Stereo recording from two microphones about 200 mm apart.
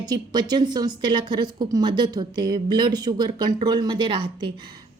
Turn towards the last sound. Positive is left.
turn(degrees=-25)  # may be behind; listen again after turning